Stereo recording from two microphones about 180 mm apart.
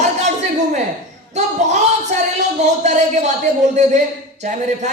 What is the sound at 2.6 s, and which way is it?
Speech, 40° right (ahead or behind).